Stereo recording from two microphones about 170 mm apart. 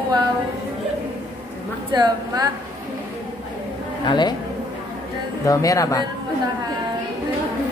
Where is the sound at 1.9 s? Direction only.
25° right (ahead or behind).